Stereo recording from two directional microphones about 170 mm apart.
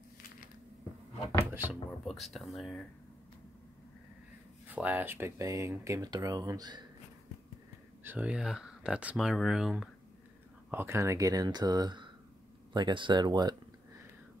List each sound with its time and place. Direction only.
1.4 s a sound: 15° right (ahead or behind)
1.9 s speech: centre (ahead or behind)
4.7 s speech: 10° right (ahead or behind)
8.0 s speech: 10° right (ahead or behind)
10.7 s speech: 15° right (ahead or behind)